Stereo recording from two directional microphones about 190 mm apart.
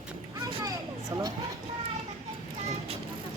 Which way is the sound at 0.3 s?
20° right (ahead or behind).